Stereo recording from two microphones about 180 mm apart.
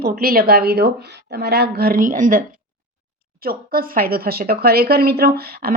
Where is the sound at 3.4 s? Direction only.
55° right (ahead or behind).